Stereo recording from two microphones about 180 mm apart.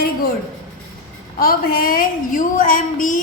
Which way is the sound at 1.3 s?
55° left (ahead or behind).